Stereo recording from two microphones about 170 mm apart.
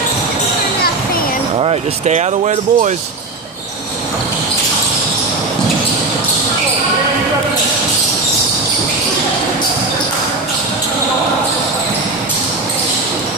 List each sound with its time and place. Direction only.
1.6 s speech: 40° right (ahead or behind)